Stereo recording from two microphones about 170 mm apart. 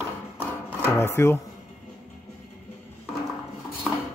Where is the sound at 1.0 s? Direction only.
15° left (ahead or behind).